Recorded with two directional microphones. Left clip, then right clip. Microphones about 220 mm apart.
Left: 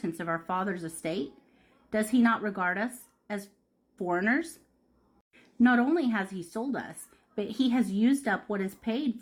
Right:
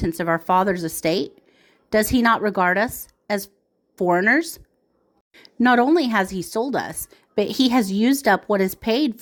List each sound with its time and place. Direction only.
0.0 s a woman's voice: 35° right (ahead or behind)
5.6 s a woman's voice: 35° right (ahead or behind)